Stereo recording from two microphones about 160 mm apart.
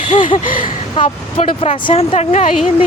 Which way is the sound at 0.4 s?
60° left (ahead or behind).